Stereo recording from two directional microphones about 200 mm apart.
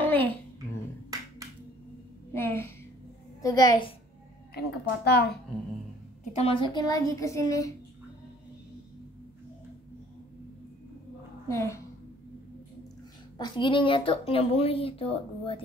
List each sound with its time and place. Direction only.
0.0 s babbling: 10° left (ahead or behind)
2.3 s a woman's voice: 10° left (ahead or behind)
4.6 s speech: 55° left (ahead or behind)
6.3 s a woman's voice: 25° left (ahead or behind)
11.4 s a woman's voice: 15° left (ahead or behind)
13.4 s speech: 25° left (ahead or behind)